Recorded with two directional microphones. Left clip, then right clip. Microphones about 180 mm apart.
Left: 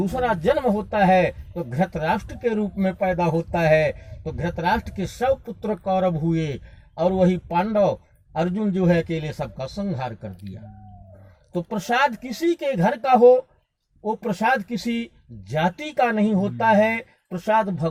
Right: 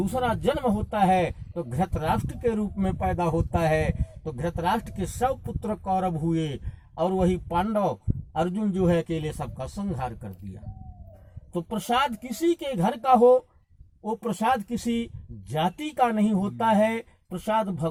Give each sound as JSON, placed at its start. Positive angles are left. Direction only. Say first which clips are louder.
{"t": 0.0, "sound": "speech", "louder": "left 3 dB", "side_deg": -30}
{"t": 11.5, "sound": "speech", "louder": "left 3 dB", "side_deg": -30}